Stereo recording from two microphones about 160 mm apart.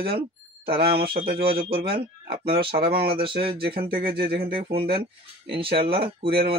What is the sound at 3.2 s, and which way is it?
Speech, 35° right (ahead or behind).